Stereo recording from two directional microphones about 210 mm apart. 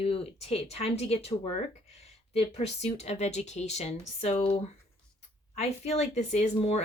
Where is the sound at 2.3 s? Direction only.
30° left (ahead or behind).